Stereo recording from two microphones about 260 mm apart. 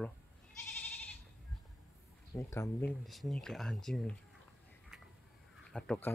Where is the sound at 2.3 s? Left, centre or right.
Centre.